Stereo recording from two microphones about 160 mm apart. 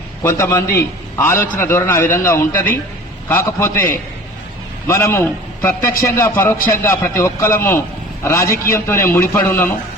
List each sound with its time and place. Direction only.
0.2 s a man's voice: 15° left (ahead or behind)